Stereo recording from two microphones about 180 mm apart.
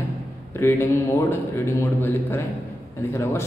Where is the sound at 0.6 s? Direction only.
15° left (ahead or behind).